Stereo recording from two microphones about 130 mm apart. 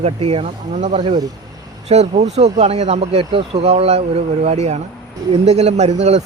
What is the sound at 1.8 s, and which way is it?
Speech, 55° right (ahead or behind).